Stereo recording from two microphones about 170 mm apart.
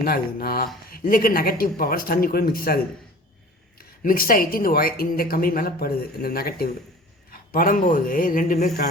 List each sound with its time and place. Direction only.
0.0 s a man's voice: 60° left (ahead or behind)